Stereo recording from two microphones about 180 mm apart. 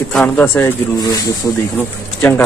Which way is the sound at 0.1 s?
10° left (ahead or behind).